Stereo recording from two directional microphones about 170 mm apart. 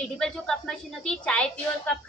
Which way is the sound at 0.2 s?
5° left (ahead or behind).